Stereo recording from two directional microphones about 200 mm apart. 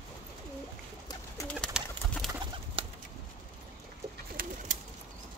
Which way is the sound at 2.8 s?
25° right (ahead or behind).